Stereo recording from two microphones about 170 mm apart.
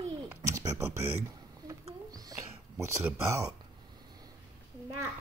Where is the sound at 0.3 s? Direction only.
15° right (ahead or behind).